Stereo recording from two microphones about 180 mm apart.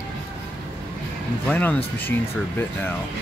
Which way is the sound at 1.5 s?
10° left (ahead or behind).